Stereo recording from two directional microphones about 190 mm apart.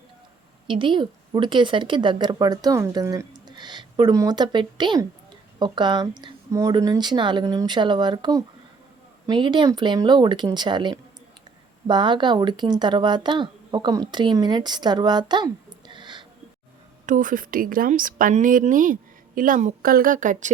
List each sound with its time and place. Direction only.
0.7 s a woman's voice: 25° right (ahead or behind)
17.1 s a woman's voice: 45° right (ahead or behind)